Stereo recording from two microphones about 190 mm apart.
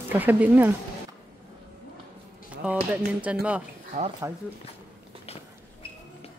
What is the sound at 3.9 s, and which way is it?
Speech, 40° right (ahead or behind).